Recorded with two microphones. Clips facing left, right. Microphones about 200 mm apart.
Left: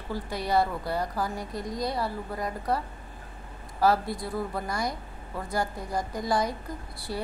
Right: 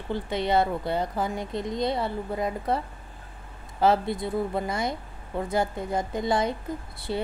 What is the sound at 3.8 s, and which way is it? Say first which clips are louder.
Speech: right 2 dB; 25° right (ahead or behind).